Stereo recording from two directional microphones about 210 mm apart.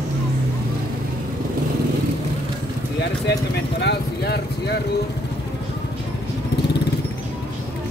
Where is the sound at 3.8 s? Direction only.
50° left (ahead or behind).